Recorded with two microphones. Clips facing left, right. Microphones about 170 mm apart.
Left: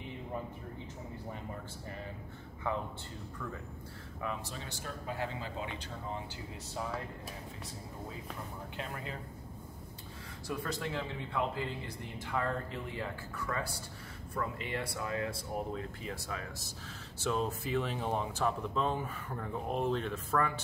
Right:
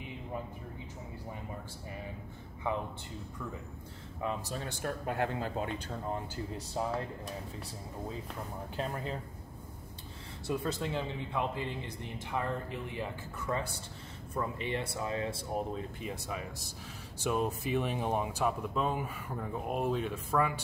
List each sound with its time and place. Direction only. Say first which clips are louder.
2.6 s speech: right 1 dB; 15° right (ahead or behind)
4.5 s speech: right 6 dB; 55° right (ahead or behind)
6.3 s speech: right 5 dB; 35° right (ahead or behind)
8.7 s speech: right 6 dB; 35° right (ahead or behind)
10.4 s speech: right 3 dB; 25° right (ahead or behind)